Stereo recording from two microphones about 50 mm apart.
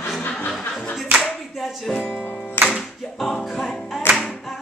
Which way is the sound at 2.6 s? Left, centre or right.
Left.